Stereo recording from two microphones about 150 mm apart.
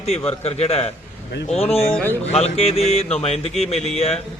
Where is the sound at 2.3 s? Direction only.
40° left (ahead or behind).